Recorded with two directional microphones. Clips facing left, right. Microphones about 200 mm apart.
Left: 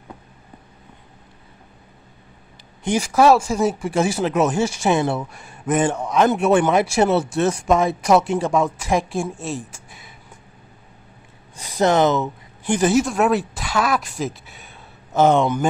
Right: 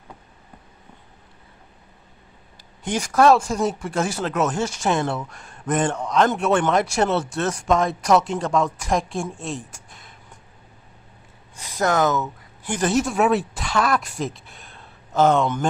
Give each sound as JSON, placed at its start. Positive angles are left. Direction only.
{"t": 2.8, "sound": "speech", "side_deg": 10}
{"t": 11.5, "sound": "speech", "side_deg": 25}
{"t": 12.6, "sound": "speech", "side_deg": 10}